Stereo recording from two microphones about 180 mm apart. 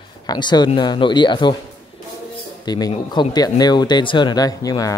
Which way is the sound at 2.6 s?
20° left (ahead or behind).